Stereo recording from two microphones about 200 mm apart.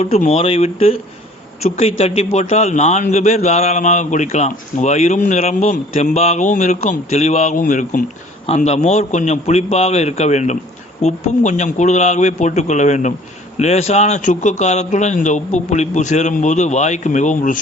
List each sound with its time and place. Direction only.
0.0 s a man's voice: 30° left (ahead or behind)